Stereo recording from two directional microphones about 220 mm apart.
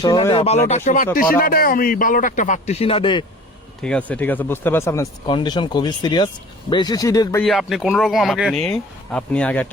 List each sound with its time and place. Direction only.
0.0 s speech: 20° left (ahead or behind)
0.9 s speech: 40° left (ahead or behind); by 3.2 s 20° left (ahead or behind)
3.8 s speech: 5° left (ahead or behind)
7.4 s speech: centre (ahead or behind)